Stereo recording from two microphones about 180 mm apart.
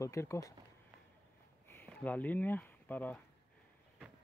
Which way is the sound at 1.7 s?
10° left (ahead or behind).